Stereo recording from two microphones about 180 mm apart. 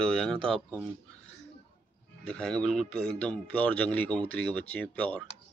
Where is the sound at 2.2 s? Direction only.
5° left (ahead or behind).